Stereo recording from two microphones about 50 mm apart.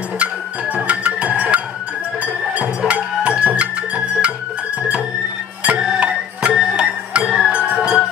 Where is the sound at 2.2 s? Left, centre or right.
Right.